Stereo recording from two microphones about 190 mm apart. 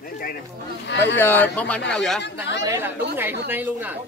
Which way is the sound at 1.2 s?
10° left (ahead or behind).